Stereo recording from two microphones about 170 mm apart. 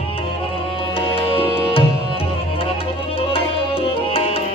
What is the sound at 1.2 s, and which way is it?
Music, 30° left (ahead or behind).